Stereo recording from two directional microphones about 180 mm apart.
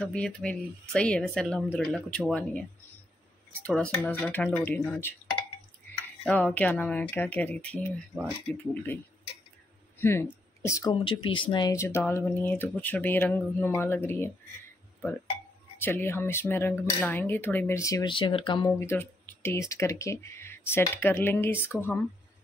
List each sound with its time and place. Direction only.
0.0 s speech: 5° left (ahead or behind)
3.6 s speech: 10° left (ahead or behind)
6.2 s speech: 10° left (ahead or behind)
15.8 s speech: 10° left (ahead or behind)
18.7 s speech: 15° left (ahead or behind)